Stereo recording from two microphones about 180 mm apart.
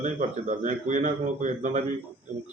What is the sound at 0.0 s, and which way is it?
Speech, 40° right (ahead or behind).